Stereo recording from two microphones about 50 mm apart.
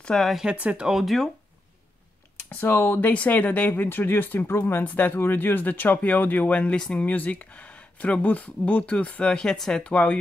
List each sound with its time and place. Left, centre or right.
0.3 s speech: centre
0.6 s speech: right
0.9 s speech: centre
2.5 s speech: left
4.8 s speech: left
9.3 s speech: centre
9.8 s speech: left